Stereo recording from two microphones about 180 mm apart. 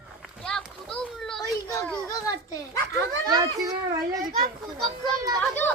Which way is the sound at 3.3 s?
20° right (ahead or behind).